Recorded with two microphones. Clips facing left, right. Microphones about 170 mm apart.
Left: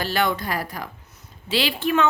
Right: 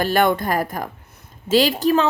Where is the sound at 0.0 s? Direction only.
50° right (ahead or behind).